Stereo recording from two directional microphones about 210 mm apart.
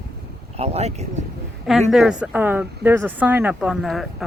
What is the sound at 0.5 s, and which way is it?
Speech, 30° right (ahead or behind).